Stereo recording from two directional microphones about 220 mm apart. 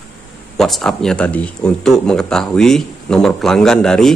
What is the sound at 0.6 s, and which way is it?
Speech, centre (ahead or behind).